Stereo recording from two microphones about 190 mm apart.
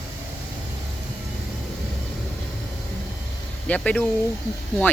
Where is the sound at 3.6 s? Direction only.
5° left (ahead or behind).